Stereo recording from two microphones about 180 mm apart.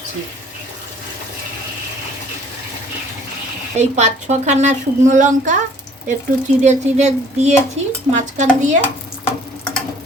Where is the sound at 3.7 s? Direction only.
40° right (ahead or behind).